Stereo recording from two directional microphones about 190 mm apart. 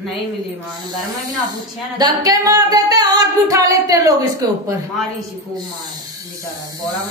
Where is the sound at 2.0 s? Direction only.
20° right (ahead or behind).